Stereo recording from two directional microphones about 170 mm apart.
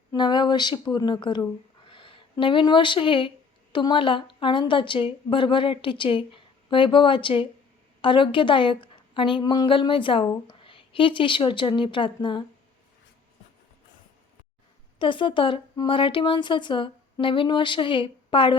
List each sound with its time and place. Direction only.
0.1 s a woman's voice: 25° left (ahead or behind)
14.9 s a woman's voice: 30° left (ahead or behind)